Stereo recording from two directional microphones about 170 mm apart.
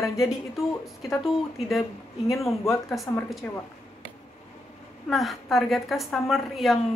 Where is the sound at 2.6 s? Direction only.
Centre (ahead or behind).